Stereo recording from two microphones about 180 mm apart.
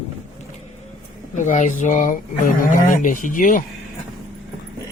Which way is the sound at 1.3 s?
45° left (ahead or behind).